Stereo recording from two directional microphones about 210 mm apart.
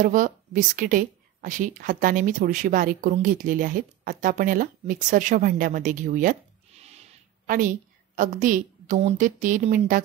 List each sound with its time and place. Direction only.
0.0 s a woman's voice: 40° right (ahead or behind)
6.8 s a sound: 30° right (ahead or behind)
8.2 s a woman's voice: 40° right (ahead or behind)